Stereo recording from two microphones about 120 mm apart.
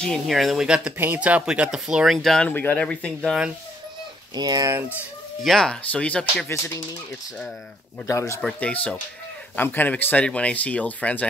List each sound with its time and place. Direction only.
0.0 s speech: centre (ahead or behind)
2.5 s speech: 15° left (ahead or behind)
4.4 s speech: 35° right (ahead or behind)
5.4 s speech: 5° left (ahead or behind)
8.1 s speech: 20° left (ahead or behind)
8.4 s speech: 5° left (ahead or behind)